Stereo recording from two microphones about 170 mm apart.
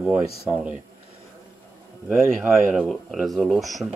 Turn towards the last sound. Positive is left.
turn(degrees=0)  # may be behind; listen again after turning